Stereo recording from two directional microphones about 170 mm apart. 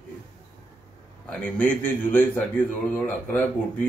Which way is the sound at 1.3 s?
5° left (ahead or behind).